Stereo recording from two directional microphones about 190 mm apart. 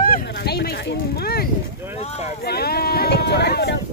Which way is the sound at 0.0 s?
55° left (ahead or behind).